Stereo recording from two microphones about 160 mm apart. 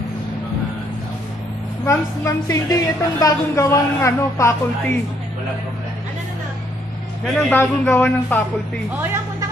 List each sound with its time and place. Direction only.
1.9 s a woman's voice: 20° left (ahead or behind)
7.2 s a man's voice: 5° left (ahead or behind)